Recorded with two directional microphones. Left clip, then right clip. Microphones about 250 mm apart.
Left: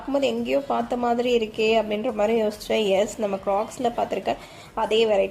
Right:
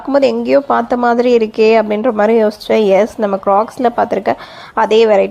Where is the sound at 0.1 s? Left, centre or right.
Right.